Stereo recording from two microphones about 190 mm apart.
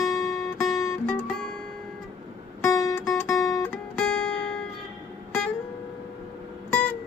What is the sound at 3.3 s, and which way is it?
Music, 15° left (ahead or behind).